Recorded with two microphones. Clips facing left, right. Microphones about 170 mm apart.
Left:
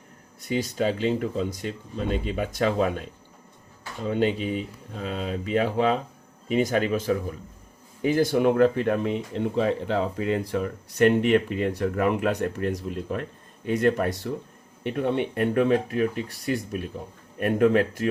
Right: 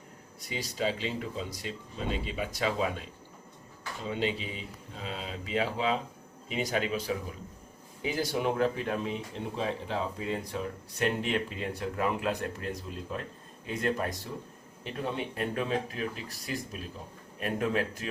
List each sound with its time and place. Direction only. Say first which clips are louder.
0.4 s speech: left 7 dB; 50° left (ahead or behind)